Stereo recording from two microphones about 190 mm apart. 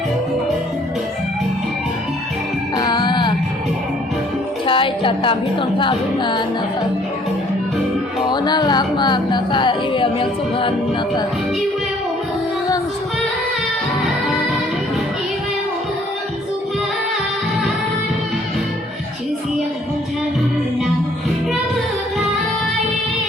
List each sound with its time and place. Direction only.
2.7 s music: 20° left (ahead or behind)
4.6 s a woman's voice: 25° left (ahead or behind)
8.3 s music: 20° left (ahead or behind)